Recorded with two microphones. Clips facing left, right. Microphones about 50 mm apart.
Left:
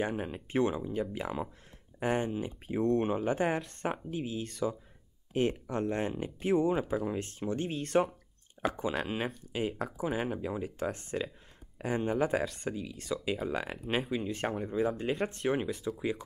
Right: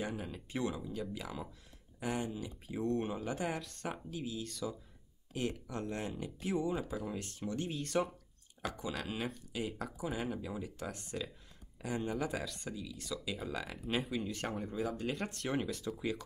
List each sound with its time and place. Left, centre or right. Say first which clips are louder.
0.0 s speech: left 7 dB; left; by 15.9 s centre